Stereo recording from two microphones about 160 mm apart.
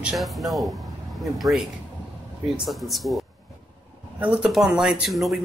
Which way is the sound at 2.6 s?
Centre (ahead or behind).